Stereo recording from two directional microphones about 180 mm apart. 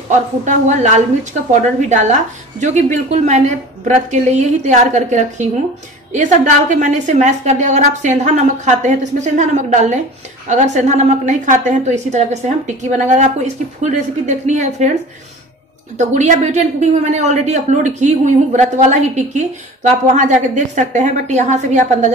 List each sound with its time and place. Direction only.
0.5 s a woman's voice: 40° right (ahead or behind)
16.0 s a woman's voice: 40° right (ahead or behind)